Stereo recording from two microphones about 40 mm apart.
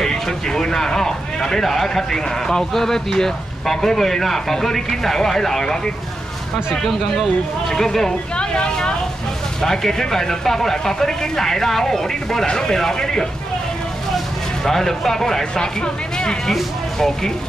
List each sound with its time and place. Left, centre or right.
0.0 s speech: centre
7.7 s speech: centre
8.4 s a sound: left
9.6 s speech: centre
16.5 s speech: centre